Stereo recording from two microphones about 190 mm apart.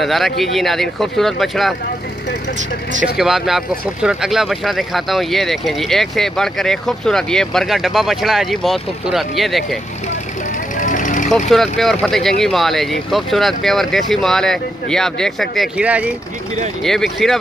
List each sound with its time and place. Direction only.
0.0 s speech: centre (ahead or behind)
3.2 s speech: centre (ahead or behind)
10.8 s vehicle: 40° left (ahead or behind)
11.5 s speech: centre (ahead or behind)